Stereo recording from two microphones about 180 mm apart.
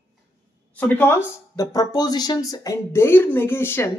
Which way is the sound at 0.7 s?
10° left (ahead or behind).